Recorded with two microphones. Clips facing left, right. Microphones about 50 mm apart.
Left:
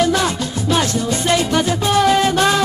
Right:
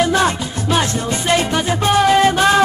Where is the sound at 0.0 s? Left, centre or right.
Right.